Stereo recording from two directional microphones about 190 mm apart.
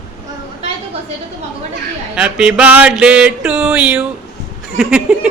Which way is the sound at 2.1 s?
5° right (ahead or behind).